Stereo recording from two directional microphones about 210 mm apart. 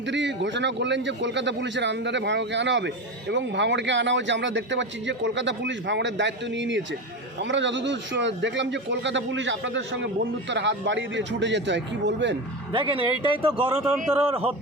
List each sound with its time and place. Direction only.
0.0 s a man's voice: 60° right (ahead or behind)
12.7 s speech: 25° right (ahead or behind)
13.7 s speech: 10° right (ahead or behind)